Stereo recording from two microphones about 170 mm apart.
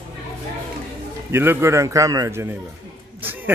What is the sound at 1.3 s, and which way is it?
A man's voice, 15° right (ahead or behind).